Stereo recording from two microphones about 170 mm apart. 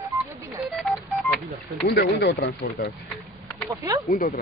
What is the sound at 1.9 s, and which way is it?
Speech, 70° left (ahead or behind).